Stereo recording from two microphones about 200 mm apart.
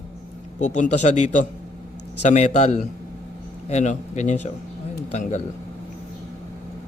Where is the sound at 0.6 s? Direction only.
35° left (ahead or behind).